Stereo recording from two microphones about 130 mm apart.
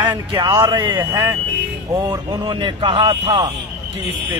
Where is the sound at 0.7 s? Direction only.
35° right (ahead or behind).